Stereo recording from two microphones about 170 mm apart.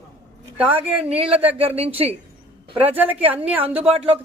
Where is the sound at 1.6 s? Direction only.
35° right (ahead or behind).